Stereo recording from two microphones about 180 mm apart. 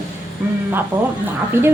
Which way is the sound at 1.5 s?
10° right (ahead or behind).